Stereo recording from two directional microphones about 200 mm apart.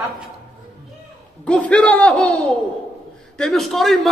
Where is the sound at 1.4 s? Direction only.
5° left (ahead or behind).